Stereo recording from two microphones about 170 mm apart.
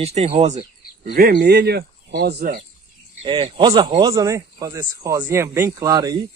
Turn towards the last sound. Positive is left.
turn(degrees=-20)  # may be behind; listen again after turning